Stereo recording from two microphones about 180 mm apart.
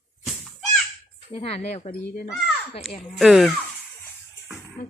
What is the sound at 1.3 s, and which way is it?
Speech, 35° left (ahead or behind).